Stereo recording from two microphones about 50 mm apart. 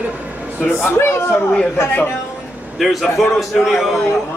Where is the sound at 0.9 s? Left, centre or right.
Left.